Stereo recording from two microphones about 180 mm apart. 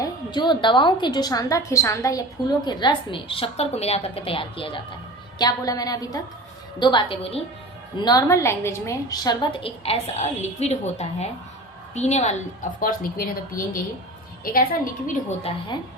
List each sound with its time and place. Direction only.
0.0 s a woman's voice: 25° left (ahead or behind)
8.0 s a woman's voice: 20° left (ahead or behind); by 12.4 s 40° left (ahead or behind)
12.8 s a woman's voice: 50° left (ahead or behind)
15.5 s a woman's voice: 30° left (ahead or behind)